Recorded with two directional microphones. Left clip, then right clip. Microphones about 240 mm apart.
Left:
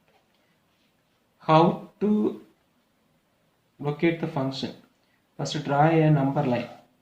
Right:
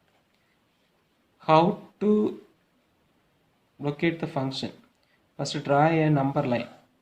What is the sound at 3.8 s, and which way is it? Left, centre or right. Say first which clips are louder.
Speech: left 2 dB; right.